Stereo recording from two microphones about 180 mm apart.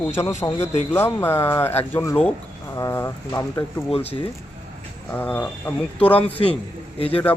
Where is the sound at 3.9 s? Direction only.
35° left (ahead or behind).